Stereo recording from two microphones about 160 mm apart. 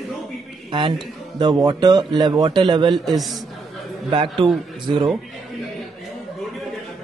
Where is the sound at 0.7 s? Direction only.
30° right (ahead or behind).